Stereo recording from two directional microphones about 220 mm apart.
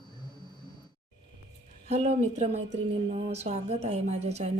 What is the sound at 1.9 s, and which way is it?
A woman's voice, 30° right (ahead or behind).